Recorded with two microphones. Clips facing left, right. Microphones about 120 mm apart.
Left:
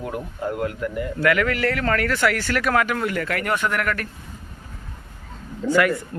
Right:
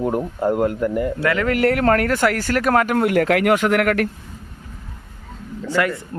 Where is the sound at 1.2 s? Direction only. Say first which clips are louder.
Left 4 dB; 25° right (ahead or behind).